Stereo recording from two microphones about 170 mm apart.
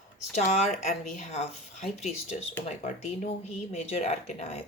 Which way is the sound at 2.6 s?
45° left (ahead or behind).